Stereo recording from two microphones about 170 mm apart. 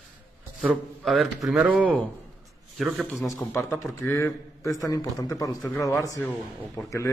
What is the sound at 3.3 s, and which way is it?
A man's voice, 10° left (ahead or behind).